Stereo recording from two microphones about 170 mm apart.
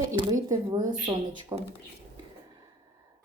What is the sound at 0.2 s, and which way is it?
A woman's voice, 25° right (ahead or behind).